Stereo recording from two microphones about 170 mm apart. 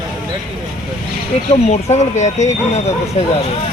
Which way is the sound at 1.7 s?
40° left (ahead or behind).